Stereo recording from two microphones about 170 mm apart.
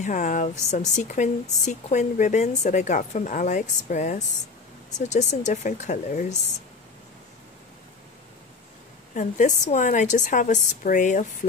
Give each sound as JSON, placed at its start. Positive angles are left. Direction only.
{"t": 0.0, "sound": "a woman's voice", "side_deg": 45}
{"t": 9.1, "sound": "a woman's voice", "side_deg": 50}